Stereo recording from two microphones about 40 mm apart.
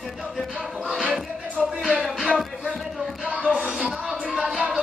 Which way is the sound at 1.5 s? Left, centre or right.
Right.